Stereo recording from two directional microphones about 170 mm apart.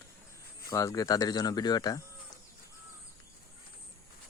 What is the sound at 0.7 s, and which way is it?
Speech, 20° left (ahead or behind).